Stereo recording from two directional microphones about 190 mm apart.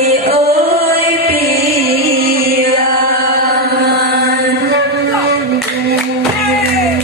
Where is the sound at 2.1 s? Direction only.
50° right (ahead or behind).